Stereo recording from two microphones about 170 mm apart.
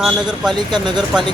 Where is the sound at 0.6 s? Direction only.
25° right (ahead or behind).